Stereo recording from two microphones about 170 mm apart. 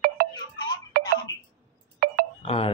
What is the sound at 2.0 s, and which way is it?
Telephone dialing, 60° right (ahead or behind).